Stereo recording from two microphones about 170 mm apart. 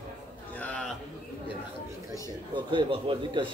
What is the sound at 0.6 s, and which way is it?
Speech, 5° left (ahead or behind).